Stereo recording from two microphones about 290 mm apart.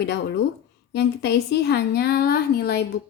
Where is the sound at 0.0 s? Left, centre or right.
Left.